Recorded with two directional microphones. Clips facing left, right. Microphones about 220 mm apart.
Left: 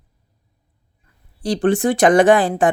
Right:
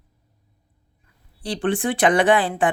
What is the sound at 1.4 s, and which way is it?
Speech, 45° left (ahead or behind).